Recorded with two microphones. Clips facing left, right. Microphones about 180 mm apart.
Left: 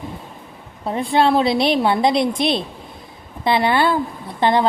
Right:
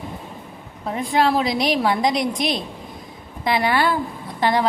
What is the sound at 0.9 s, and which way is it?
A woman's voice, 30° left (ahead or behind).